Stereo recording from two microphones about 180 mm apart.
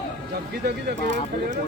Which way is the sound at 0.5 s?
65° right (ahead or behind).